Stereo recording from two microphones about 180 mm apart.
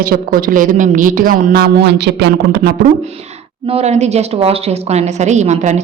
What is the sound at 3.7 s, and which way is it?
A woman's voice, 35° right (ahead or behind).